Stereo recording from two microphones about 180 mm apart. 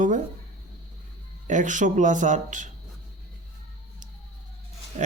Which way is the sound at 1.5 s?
45° right (ahead or behind).